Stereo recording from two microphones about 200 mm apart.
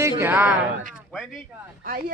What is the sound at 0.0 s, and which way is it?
Speech, 10° right (ahead or behind).